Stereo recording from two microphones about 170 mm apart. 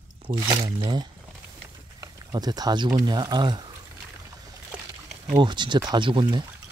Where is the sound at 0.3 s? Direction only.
30° right (ahead or behind).